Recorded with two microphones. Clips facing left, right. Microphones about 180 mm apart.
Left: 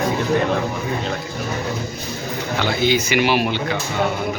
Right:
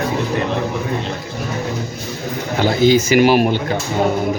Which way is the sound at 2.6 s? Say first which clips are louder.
Right 6 dB; 45° right (ahead or behind).